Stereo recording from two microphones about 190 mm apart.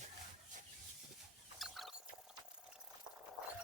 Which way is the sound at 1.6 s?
Centre (ahead or behind).